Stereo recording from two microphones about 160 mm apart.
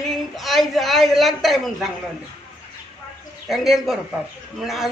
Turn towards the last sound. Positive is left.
turn(degrees=0)  # may be behind; listen again after turning